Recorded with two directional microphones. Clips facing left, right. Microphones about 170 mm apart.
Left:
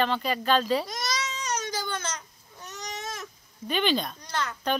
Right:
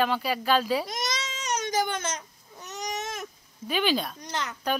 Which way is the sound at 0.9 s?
25° right (ahead or behind).